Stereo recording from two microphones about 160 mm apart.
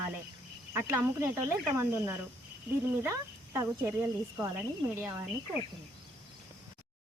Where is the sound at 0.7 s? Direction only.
15° right (ahead or behind).